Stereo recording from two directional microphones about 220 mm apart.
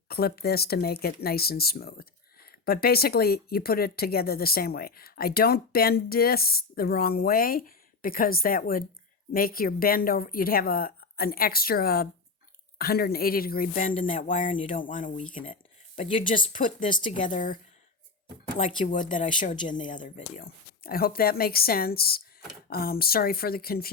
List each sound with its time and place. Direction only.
0.1 s a woman's voice: 45° left (ahead or behind)